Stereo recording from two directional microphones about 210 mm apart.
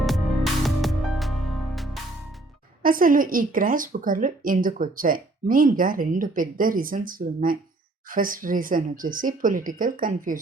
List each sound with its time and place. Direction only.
0.0 s music: centre (ahead or behind)
2.8 s speech: 40° right (ahead or behind)